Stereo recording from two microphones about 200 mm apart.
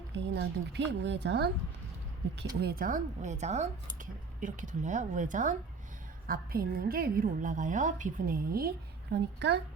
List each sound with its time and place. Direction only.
0.1 s a woman's voice: 60° right (ahead or behind)
2.6 s a woman's voice: 50° right (ahead or behind)